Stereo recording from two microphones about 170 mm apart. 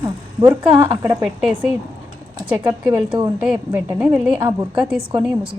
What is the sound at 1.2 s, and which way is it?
A woman's voice, 5° right (ahead or behind).